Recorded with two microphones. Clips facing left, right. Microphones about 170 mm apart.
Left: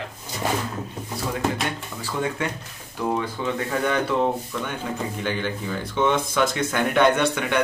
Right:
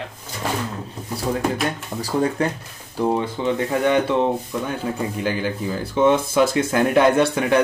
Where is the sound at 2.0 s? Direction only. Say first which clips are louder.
Right 6 dB; 35° right (ahead or behind); by 4.1 s 20° right (ahead or behind).